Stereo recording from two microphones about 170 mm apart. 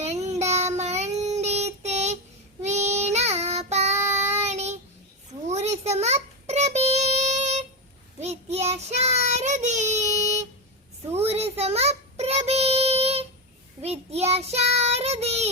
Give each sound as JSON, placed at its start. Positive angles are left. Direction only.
{"t": 0.0, "sound": "child singing", "side_deg": -40}